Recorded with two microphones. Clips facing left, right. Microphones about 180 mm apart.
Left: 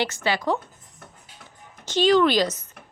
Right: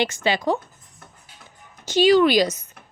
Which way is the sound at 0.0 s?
20° right (ahead or behind).